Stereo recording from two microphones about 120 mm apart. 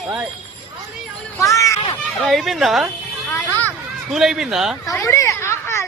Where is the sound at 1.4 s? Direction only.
25° left (ahead or behind).